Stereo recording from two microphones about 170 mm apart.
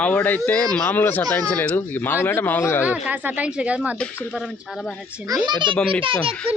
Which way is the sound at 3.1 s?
10° right (ahead or behind).